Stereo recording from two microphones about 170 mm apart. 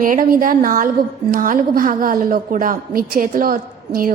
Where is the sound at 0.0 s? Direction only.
55° right (ahead or behind).